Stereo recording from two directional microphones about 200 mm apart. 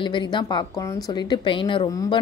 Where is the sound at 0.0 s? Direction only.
25° left (ahead or behind).